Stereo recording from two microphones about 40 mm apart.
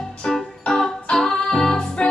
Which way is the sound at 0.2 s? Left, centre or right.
Centre.